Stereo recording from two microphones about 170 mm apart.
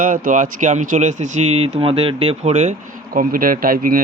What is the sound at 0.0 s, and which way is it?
Speech, 50° right (ahead or behind).